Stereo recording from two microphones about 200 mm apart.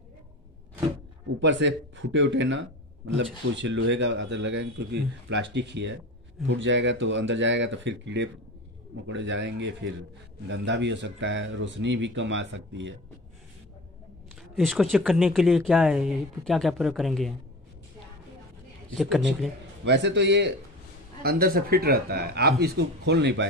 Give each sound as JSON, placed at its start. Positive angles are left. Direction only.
{"t": 1.4, "sound": "speech", "side_deg": -65}
{"t": 14.3, "sound": "speech", "side_deg": 0}
{"t": 18.9, "sound": "speech", "side_deg": 0}
{"t": 19.8, "sound": "speech", "side_deg": -60}
{"t": 21.2, "sound": "speech", "side_deg": -50}